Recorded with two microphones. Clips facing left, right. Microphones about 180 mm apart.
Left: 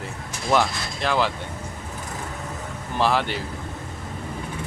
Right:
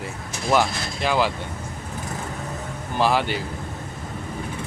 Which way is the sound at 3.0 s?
5° right (ahead or behind).